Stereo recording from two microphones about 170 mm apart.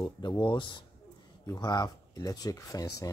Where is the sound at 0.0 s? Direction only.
25° left (ahead or behind).